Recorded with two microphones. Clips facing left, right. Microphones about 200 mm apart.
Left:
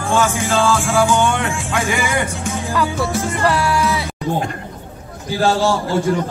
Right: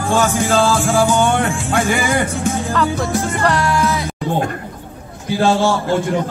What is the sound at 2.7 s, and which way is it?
Music, 5° left (ahead or behind).